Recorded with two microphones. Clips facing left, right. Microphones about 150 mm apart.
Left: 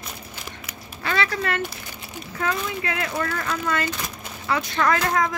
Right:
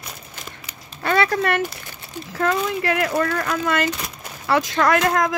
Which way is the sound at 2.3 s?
70° right (ahead or behind).